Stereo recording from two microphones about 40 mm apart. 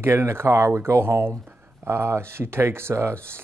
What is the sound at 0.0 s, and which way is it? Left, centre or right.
Speech, right.